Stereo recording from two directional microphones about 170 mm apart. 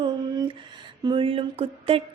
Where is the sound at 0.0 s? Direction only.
25° right (ahead or behind).